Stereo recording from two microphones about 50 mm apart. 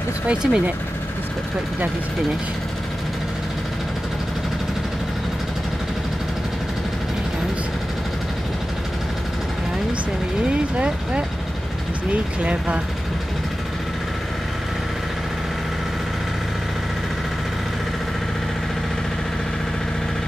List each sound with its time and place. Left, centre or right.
0.3 s speech: centre
10.5 s speech: right